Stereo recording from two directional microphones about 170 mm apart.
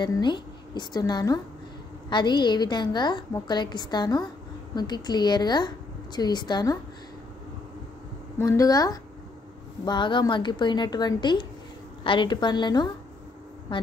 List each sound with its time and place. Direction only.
0.0 s a woman's voice: 25° left (ahead or behind)
8.4 s a woman's voice: 20° left (ahead or behind)